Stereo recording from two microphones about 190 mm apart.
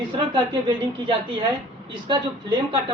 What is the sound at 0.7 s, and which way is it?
A woman's voice, 25° right (ahead or behind).